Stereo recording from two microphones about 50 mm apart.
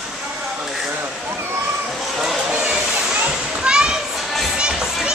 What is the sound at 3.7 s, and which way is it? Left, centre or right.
Children playing, centre.